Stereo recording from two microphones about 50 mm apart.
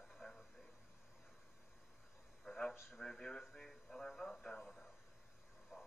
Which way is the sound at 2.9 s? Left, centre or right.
Centre.